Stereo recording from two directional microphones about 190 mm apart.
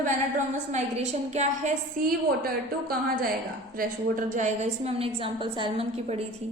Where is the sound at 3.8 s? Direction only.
45° right (ahead or behind).